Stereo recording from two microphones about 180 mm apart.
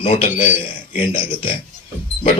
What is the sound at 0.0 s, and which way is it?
Music, 30° left (ahead or behind).